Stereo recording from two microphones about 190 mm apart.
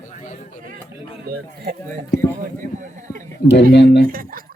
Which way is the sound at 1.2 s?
50° right (ahead or behind).